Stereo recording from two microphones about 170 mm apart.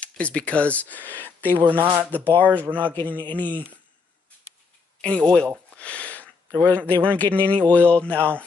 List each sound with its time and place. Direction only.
0.0 s speech: 5° left (ahead or behind)
1.6 s speech: 10° right (ahead or behind)
2.1 s speech: 10° left (ahead or behind)
5.0 s speech: 5° left (ahead or behind)
5.8 s a sound: 10° left (ahead or behind)
6.7 s speech: 10° left (ahead or behind)